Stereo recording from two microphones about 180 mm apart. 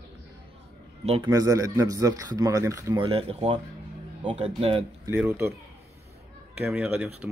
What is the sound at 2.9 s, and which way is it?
A man's voice, 30° right (ahead or behind).